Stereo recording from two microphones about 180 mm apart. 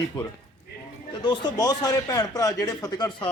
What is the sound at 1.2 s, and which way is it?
A man's voice, 25° left (ahead or behind).